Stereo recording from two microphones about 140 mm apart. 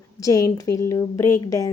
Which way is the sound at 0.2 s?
25° left (ahead or behind).